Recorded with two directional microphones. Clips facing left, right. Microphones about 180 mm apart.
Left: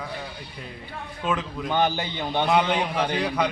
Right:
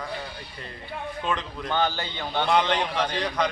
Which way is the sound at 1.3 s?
5° left (ahead or behind).